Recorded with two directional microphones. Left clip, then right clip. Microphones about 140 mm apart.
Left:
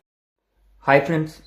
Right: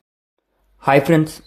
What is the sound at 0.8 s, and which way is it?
Speech, 65° right (ahead or behind).